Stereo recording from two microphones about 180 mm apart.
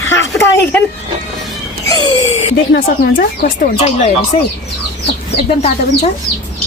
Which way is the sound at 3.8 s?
35° left (ahead or behind).